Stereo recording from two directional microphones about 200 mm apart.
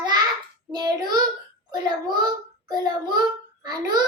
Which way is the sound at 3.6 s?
20° right (ahead or behind).